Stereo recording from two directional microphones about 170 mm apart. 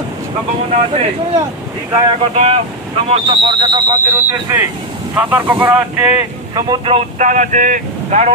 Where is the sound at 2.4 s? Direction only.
35° right (ahead or behind); by 4.2 s 20° right (ahead or behind).